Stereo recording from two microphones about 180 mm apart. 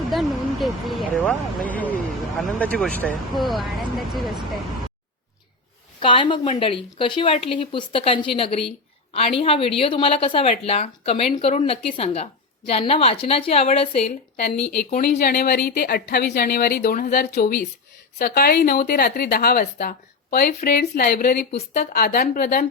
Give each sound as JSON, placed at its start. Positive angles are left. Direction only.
{"t": 0.1, "sound": "speech", "side_deg": 0}
{"t": 6.0, "sound": "a woman's voice", "side_deg": 30}
{"t": 15.2, "sound": "a woman's voice", "side_deg": 60}